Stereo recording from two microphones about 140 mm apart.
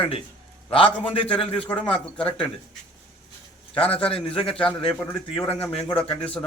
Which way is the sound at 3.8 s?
45° left (ahead or behind).